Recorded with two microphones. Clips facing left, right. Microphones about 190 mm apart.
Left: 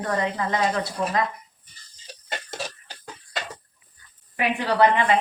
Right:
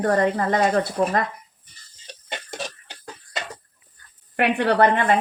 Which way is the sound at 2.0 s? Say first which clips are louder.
Even; 5° left (ahead or behind).